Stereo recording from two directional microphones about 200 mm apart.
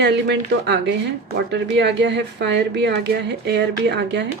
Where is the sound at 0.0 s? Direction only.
60° right (ahead or behind).